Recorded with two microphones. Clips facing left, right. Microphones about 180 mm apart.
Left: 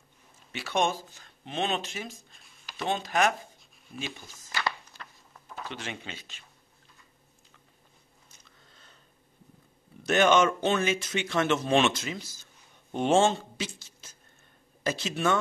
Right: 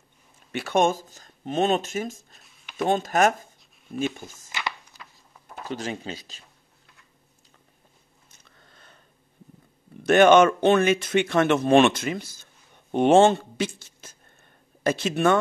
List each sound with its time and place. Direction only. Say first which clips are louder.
0.5 s speech: right 6 dB; 50° right (ahead or behind)
5.6 s speech: right 7 dB; 40° right (ahead or behind)
8.7 s a sound: right 6 dB; 60° right (ahead or behind)
10.0 s speech: right 7 dB; 55° right (ahead or behind)